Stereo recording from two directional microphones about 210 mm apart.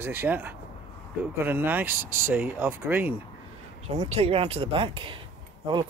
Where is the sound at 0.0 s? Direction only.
10° right (ahead or behind).